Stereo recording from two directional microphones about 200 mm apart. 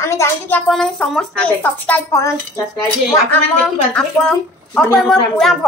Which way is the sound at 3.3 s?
5° left (ahead or behind).